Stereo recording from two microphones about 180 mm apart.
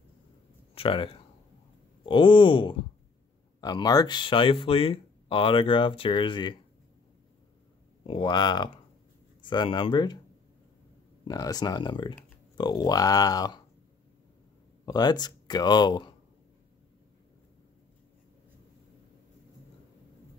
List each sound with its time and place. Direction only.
0.7 s speech: 30° left (ahead or behind)
8.1 s speech: 25° left (ahead or behind)
11.2 s speech: 20° left (ahead or behind)
14.9 s speech: 25° left (ahead or behind)